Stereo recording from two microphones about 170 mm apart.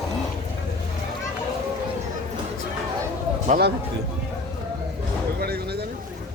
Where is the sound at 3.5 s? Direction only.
65° right (ahead or behind).